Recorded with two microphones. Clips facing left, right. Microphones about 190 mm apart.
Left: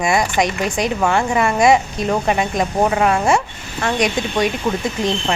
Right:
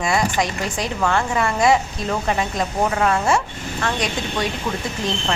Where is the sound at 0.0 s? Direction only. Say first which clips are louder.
Left 3 dB; 15° left (ahead or behind).